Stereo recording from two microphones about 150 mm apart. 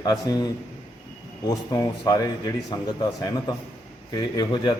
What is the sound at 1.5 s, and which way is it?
A man's voice, 25° left (ahead or behind).